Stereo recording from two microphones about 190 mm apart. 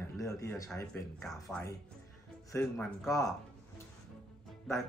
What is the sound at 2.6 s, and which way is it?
Speech, 5° left (ahead or behind).